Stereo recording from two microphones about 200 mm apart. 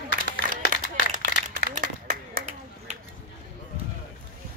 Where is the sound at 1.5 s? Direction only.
40° right (ahead or behind).